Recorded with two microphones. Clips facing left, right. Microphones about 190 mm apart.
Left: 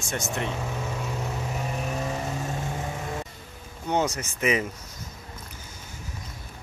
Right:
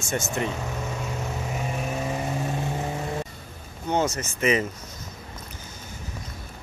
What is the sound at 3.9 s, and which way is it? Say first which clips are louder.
Speech: right 1 dB; 15° left (ahead or behind).